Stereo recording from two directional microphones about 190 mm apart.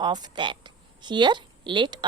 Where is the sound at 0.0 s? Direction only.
20° right (ahead or behind).